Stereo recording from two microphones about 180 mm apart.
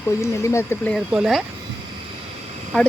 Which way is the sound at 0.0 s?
15° left (ahead or behind).